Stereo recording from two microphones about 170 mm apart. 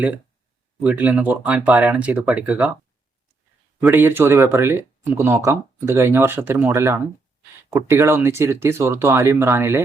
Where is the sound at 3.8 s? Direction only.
10° right (ahead or behind).